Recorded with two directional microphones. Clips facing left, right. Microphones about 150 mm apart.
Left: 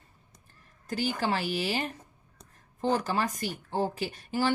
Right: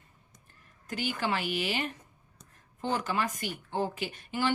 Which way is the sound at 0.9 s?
35° left (ahead or behind).